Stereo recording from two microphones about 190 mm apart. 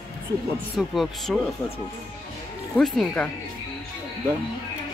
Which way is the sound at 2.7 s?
Centre (ahead or behind).